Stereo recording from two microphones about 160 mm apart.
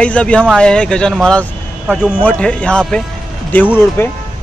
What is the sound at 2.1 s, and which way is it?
A man's voice, 10° left (ahead or behind).